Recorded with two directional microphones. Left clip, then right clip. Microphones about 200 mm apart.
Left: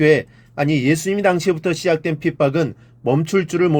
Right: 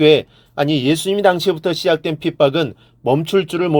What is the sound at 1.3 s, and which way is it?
Speech, 25° right (ahead or behind).